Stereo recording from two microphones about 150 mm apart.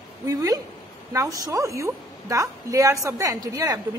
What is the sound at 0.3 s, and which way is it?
A woman's voice, 25° right (ahead or behind).